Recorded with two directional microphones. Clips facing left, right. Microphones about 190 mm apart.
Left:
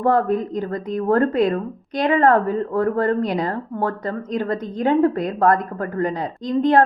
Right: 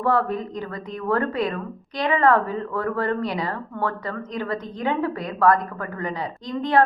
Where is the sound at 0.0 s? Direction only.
50° left (ahead or behind).